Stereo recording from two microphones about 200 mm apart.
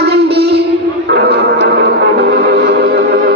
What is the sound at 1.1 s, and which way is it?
Music, 55° right (ahead or behind).